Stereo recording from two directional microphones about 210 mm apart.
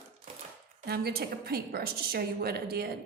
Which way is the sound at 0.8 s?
50° right (ahead or behind).